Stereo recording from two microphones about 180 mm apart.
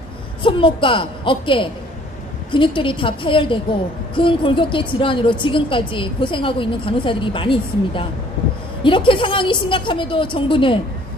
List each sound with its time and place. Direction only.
0.4 s a woman's voice: 30° left (ahead or behind)